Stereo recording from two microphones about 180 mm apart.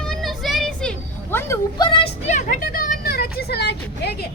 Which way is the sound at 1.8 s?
30° left (ahead or behind).